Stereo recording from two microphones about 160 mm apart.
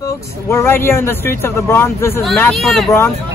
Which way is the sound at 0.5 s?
15° left (ahead or behind).